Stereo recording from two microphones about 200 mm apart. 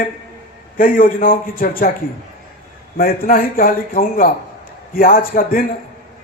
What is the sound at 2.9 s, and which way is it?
A man's voice, 45° left (ahead or behind).